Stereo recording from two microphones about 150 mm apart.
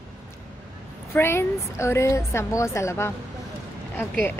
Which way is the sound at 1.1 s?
15° left (ahead or behind).